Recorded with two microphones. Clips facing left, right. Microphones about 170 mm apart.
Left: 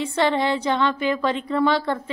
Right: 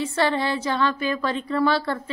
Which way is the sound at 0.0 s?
20° left (ahead or behind).